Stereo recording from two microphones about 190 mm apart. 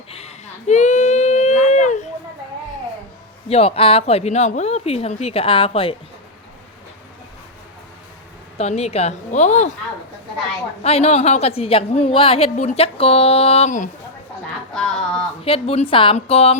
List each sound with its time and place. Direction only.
0.1 s a sound: 35° left (ahead or behind)
3.5 s a woman's voice: 30° left (ahead or behind)
8.5 s a woman's voice: 35° left (ahead or behind)
10.8 s a woman's voice: 35° left (ahead or behind)
14.7 s a sound: 5° left (ahead or behind)
15.4 s a woman's voice: 30° left (ahead or behind)